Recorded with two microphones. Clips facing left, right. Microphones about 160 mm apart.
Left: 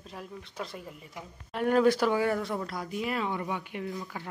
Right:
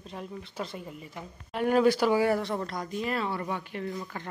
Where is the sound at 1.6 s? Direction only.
Centre (ahead or behind).